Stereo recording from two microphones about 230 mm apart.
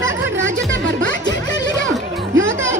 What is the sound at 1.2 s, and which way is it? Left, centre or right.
Music, centre.